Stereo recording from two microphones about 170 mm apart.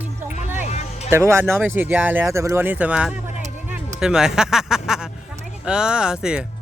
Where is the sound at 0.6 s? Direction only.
40° left (ahead or behind).